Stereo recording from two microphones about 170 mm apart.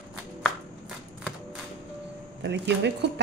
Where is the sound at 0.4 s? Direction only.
Centre (ahead or behind).